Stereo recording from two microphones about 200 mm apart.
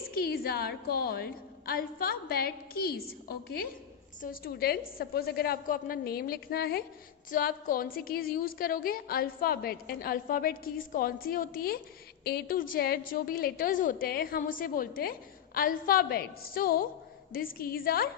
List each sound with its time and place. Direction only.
0.1 s a woman's voice: 50° left (ahead or behind)